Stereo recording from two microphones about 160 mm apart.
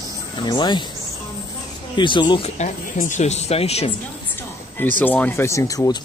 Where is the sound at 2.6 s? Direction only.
50° left (ahead or behind).